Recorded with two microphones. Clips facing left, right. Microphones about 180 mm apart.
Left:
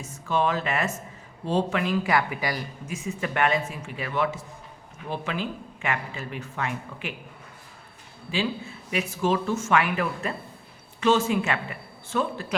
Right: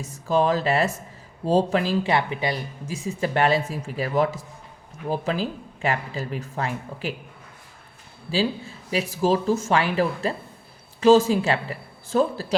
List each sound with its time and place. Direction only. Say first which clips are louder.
0.3 s speech: right 4 dB; 35° right (ahead or behind)
8.3 s speech: right 4 dB; 35° right (ahead or behind)